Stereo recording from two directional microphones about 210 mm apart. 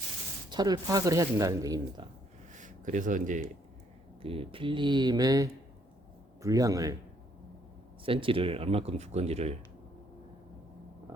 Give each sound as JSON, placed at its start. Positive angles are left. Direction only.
{"t": 0.5, "sound": "speech", "side_deg": -20}
{"t": 2.5, "sound": "a sound", "side_deg": -35}
{"t": 4.2, "sound": "speech", "side_deg": -25}
{"t": 8.0, "sound": "speech", "side_deg": -25}